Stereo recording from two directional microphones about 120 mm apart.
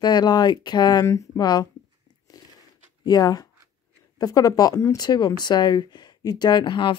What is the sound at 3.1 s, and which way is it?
Speech, 30° left (ahead or behind).